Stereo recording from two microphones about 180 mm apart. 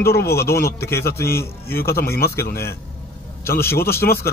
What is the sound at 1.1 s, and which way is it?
Speech, 15° left (ahead or behind).